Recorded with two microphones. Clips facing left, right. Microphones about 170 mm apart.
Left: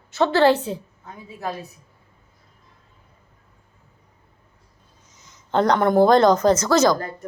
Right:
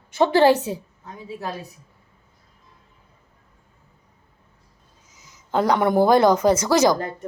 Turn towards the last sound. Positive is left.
turn(degrees=-15)  # may be behind; listen again after turning